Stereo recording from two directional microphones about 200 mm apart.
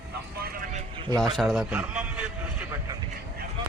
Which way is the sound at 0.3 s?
50° right (ahead or behind).